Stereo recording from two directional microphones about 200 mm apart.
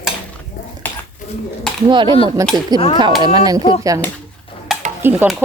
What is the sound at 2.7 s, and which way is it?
Speech, 25° left (ahead or behind).